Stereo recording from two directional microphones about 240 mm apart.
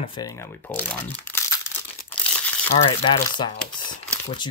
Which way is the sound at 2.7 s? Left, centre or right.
Left.